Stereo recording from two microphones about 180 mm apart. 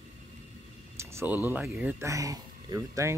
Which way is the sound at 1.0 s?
10° right (ahead or behind).